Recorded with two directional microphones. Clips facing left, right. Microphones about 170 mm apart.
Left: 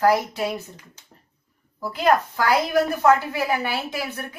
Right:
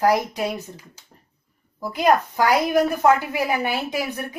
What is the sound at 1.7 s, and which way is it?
A woman's voice, 15° right (ahead or behind).